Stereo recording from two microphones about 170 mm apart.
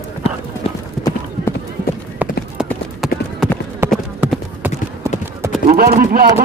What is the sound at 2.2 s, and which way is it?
Clip-clop, 10° right (ahead or behind).